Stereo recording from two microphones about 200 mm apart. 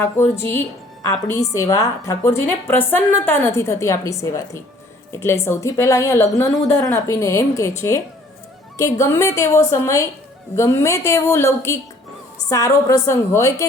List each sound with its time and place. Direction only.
0.0 s a woman's voice: 10° left (ahead or behind)